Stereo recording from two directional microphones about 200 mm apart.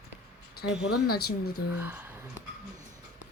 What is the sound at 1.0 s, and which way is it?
Speech, 50° left (ahead or behind).